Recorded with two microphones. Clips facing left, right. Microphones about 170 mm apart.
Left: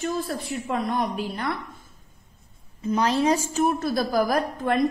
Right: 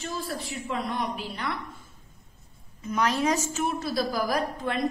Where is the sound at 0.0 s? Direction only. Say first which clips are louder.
Left 6 dB; 50° left (ahead or behind).